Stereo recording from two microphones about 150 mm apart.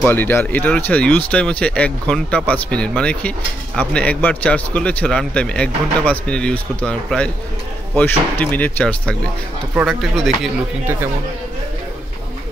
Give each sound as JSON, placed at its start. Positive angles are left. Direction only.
{"t": 0.0, "sound": "speech", "side_deg": 15}